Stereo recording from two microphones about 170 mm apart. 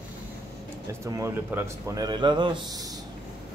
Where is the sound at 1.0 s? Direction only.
15° right (ahead or behind).